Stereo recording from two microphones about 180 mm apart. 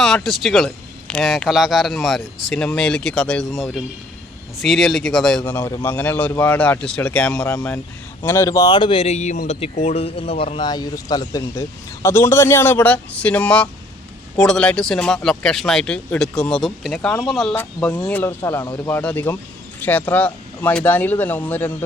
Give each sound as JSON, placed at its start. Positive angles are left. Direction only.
{"t": 0.0, "sound": "speech", "side_deg": 0}
{"t": 7.3, "sound": "speech", "side_deg": 20}